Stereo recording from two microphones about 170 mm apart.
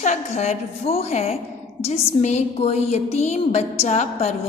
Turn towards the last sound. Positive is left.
turn(degrees=40)  # may be behind; listen again after turning